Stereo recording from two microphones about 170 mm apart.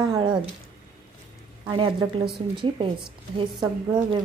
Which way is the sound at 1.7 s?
25° right (ahead or behind).